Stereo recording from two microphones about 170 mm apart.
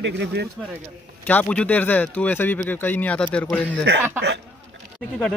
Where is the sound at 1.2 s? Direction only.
10° left (ahead or behind).